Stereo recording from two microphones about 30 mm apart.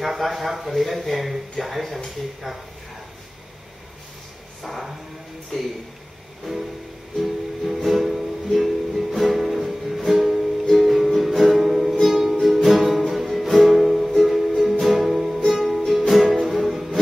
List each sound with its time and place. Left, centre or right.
0.0 s speech: centre
5.5 s a man's voice: centre
6.5 s speech: centre
7.2 s music: centre
8.5 s music: centre
16.1 s music: centre